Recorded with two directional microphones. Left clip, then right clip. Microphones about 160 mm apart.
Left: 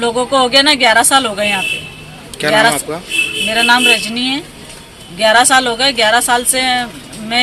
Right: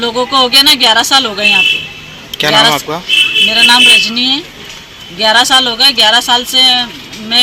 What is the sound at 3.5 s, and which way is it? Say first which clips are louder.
Speech: right 4 dB; 15° left (ahead or behind).